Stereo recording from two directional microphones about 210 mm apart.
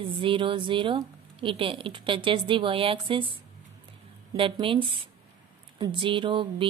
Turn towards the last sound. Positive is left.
turn(degrees=-25)  # may be behind; listen again after turning